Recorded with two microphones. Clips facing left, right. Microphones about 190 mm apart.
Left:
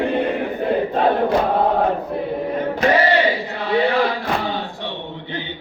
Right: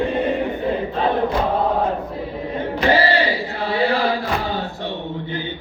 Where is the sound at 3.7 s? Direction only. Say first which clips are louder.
Left 2 dB; 35° right (ahead or behind).